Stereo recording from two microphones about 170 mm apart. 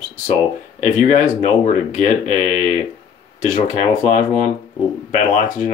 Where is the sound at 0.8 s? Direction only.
50° left (ahead or behind).